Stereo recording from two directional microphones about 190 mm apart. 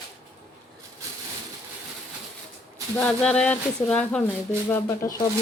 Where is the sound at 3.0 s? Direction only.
5° left (ahead or behind).